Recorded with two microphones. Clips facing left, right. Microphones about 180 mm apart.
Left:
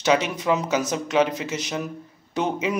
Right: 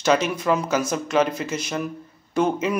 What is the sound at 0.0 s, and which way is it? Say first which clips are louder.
A man's voice: right 1 dB; 20° left (ahead or behind).